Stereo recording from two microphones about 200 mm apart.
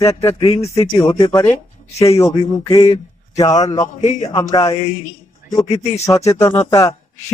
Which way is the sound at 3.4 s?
15° left (ahead or behind).